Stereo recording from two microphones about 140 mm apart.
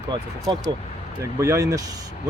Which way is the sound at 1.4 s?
20° right (ahead or behind).